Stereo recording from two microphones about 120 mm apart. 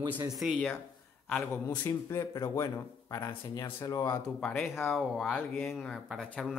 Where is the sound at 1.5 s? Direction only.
15° left (ahead or behind).